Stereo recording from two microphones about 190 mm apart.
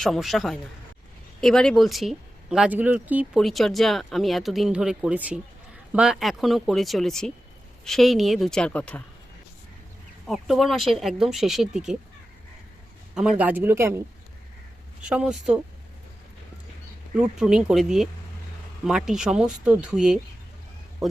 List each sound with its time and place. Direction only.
0.0 s speech: centre (ahead or behind)
10.2 s speech: centre (ahead or behind)
13.1 s speech: 5° right (ahead or behind)
15.0 s speech: 5° right (ahead or behind)
17.2 s speech: 5° right (ahead or behind)